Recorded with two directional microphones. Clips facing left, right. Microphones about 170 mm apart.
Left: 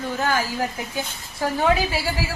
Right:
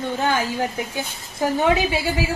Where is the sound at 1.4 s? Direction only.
20° right (ahead or behind).